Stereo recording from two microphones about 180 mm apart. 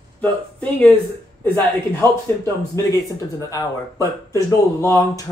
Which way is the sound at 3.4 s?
15° left (ahead or behind).